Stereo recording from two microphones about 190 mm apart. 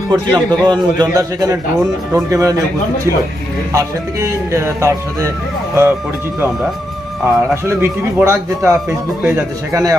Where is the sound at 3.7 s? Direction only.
15° right (ahead or behind).